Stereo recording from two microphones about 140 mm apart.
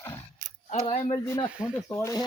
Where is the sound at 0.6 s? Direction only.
45° left (ahead or behind).